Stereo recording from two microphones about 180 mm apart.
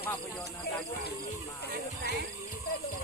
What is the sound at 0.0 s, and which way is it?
Speech, 10° left (ahead or behind).